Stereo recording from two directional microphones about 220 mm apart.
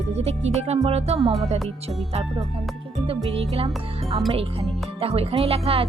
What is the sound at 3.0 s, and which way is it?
Speech, 25° right (ahead or behind).